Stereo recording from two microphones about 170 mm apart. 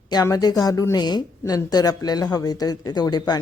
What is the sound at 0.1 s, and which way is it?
A woman's voice, 25° left (ahead or behind).